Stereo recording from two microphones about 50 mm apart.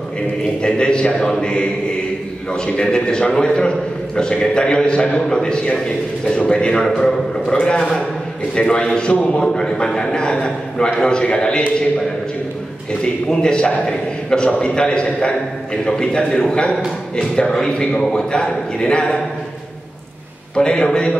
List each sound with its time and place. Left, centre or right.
0.6 s a man's voice: centre
13.3 s a man's voice: centre
20.5 s a man's voice: centre